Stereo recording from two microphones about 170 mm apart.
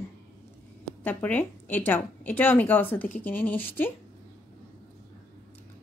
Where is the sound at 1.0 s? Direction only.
10° left (ahead or behind).